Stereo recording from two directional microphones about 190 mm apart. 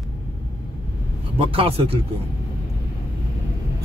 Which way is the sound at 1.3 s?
30° right (ahead or behind).